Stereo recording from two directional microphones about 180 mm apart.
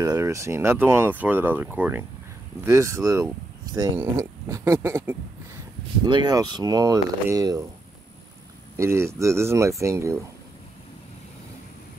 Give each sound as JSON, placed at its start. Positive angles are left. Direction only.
{"t": 0.0, "sound": "speech", "side_deg": -20}
{"t": 6.0, "sound": "speech", "side_deg": -25}
{"t": 8.7, "sound": "speech", "side_deg": -15}